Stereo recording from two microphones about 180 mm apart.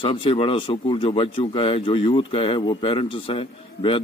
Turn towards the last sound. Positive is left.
turn(degrees=30)  # may be behind; listen again after turning